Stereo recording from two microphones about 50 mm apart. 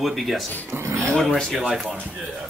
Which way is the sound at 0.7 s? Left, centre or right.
Right.